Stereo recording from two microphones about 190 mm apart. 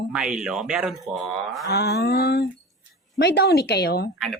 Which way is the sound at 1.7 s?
60° left (ahead or behind).